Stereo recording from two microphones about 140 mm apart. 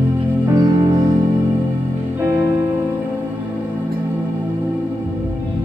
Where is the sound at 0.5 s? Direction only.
25° right (ahead or behind).